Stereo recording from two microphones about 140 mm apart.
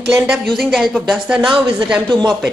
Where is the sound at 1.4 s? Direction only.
35° right (ahead or behind).